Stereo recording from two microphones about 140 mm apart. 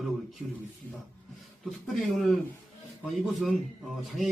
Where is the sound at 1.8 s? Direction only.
Centre (ahead or behind).